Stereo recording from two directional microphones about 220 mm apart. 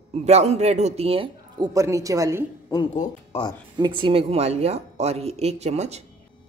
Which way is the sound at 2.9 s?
30° left (ahead or behind).